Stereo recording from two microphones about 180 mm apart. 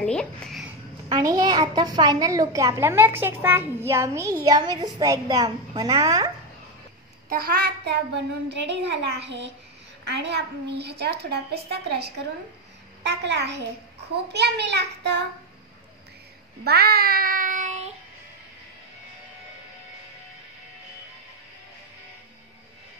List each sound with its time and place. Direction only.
0.0 s a child's voice: 5° left (ahead or behind)
1.0 s a woman's voice: 25° right (ahead or behind)
7.2 s a child's voice: 55° right (ahead or behind)
16.6 s child singing: 60° right (ahead or behind); by 17.9 s 40° right (ahead or behind)